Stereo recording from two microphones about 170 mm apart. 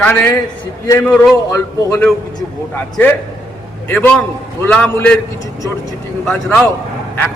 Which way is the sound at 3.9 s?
10° left (ahead or behind).